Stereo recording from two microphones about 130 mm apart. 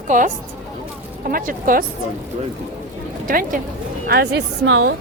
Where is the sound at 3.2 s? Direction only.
90° right.